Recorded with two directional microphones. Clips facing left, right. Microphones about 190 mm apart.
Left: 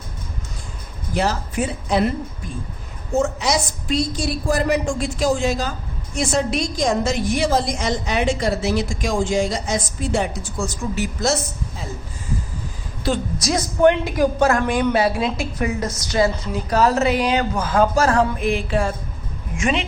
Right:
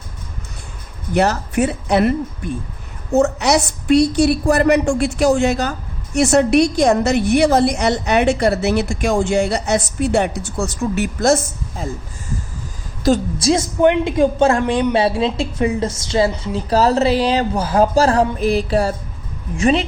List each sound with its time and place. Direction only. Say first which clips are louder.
1.1 s a woman's voice: right 5 dB; 65° right (ahead or behind)
13.0 s a woman's voice: right 7 dB; 45° right (ahead or behind)
13.4 s a woman's voice: even; 25° right (ahead or behind)